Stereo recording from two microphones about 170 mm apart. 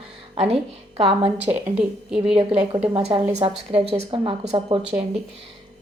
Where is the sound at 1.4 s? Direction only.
10° right (ahead or behind).